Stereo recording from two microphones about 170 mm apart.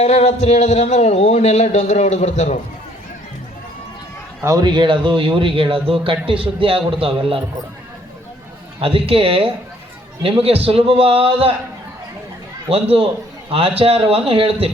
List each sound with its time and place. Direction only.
0.0 s speech: 40° left (ahead or behind)
4.4 s speech: 25° right (ahead or behind)
8.8 s speech: 35° right (ahead or behind)
12.6 s speech: 35° right (ahead or behind)